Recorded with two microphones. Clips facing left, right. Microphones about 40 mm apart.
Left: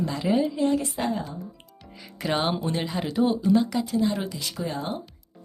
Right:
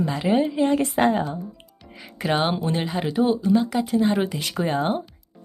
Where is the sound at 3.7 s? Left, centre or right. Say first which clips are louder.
Right 4 dB; right.